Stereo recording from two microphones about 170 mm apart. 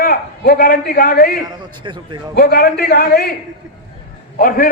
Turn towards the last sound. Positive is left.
turn(degrees=60)  # may be behind; listen again after turning